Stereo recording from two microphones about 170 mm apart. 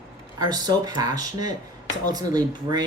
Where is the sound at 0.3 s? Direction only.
25° right (ahead or behind).